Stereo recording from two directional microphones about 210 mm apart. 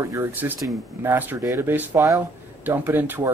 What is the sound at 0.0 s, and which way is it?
Speech, 10° right (ahead or behind).